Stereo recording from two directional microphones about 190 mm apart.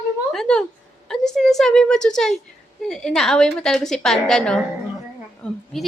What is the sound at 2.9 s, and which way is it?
A woman's voice, 5° left (ahead or behind).